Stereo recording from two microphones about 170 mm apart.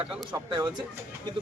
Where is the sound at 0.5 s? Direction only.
25° right (ahead or behind).